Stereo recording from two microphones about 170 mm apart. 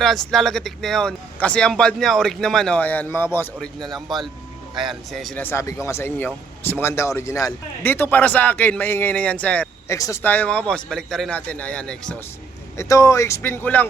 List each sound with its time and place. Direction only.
0.0 s speech: centre (ahead or behind)
3.8 s speech: centre (ahead or behind)
12.7 s speech: 20° left (ahead or behind)